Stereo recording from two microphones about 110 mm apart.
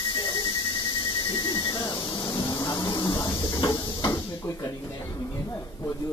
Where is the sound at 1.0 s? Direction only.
40° left (ahead or behind).